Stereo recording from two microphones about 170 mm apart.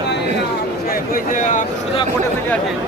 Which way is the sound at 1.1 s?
50° left (ahead or behind).